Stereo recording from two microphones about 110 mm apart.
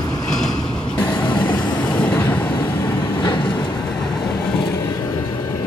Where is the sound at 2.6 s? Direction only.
20° left (ahead or behind).